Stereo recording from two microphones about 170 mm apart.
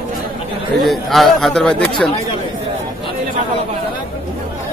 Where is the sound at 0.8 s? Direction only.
Centre (ahead or behind).